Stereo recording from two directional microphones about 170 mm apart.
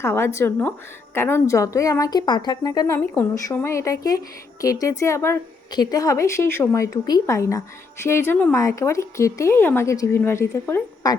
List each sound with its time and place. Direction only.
0.0 s a woman's voice: 15° left (ahead or behind)